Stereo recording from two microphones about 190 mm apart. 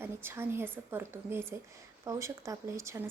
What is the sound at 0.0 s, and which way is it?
A woman's voice, 10° right (ahead or behind).